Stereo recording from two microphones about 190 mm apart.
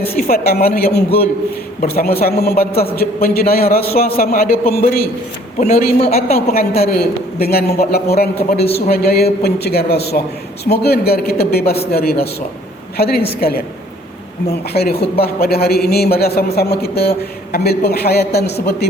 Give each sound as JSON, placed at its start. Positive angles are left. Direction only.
{"t": 0.2, "sound": "a man's voice", "side_deg": 50}
{"t": 5.5, "sound": "a man's voice", "side_deg": 35}
{"t": 6.5, "sound": "a man's voice", "side_deg": 55}
{"t": 14.7, "sound": "a man's voice", "side_deg": 55}